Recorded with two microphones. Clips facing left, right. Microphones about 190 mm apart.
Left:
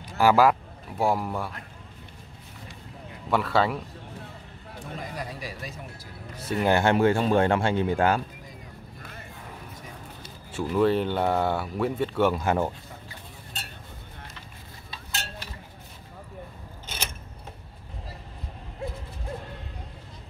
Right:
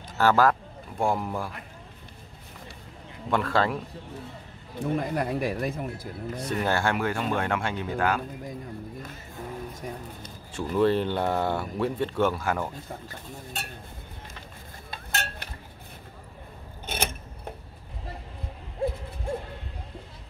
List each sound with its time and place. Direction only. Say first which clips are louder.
0.0 s speech: left 2 dB; 10° left (ahead or behind)
3.3 s speech: left 1 dB; 5° left (ahead or behind)
4.8 s speech: right 9 dB; 60° right (ahead or behind)
6.3 s speech: left 3 dB; 5° left (ahead or behind)
6.7 s speech: left 8 dB; 25° left (ahead or behind)
10.2 s speech: left 4 dB; 5° left (ahead or behind)
12.4 s speech: left 4 dB; 25° left (ahead or behind)
14.9 s cutlery: right 4 dB; 60° right (ahead or behind)
16.8 s mechanisms: right 7 dB; 55° right (ahead or behind)
18.8 s hoot: right 7 dB; 30° right (ahead or behind)